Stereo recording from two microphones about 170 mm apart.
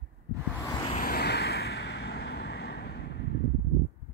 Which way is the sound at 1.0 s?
65° left (ahead or behind).